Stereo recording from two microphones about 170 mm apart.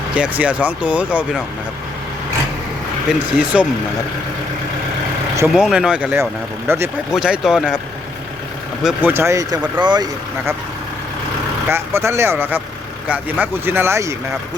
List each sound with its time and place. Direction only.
0.1 s speech: 5° right (ahead or behind)
3.1 s speech: 5° right (ahead or behind)
5.5 s speech: 5° right (ahead or behind)
7.1 s speech: 5° right (ahead or behind)
8.8 s speech: 10° right (ahead or behind); by 10.1 s 25° right (ahead or behind)
11.7 s speech: 15° right (ahead or behind)